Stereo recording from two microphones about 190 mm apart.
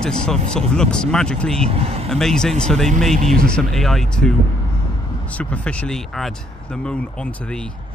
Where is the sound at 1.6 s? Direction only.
30° right (ahead or behind).